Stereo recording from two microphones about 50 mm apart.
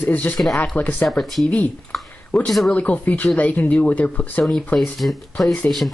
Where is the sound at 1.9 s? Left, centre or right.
Centre.